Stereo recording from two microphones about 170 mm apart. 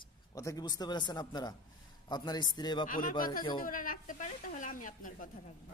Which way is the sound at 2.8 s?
55° left (ahead or behind).